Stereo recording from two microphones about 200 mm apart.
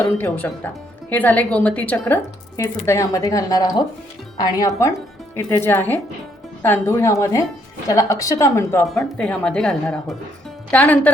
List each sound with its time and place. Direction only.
0.0 s speech: 10° left (ahead or behind)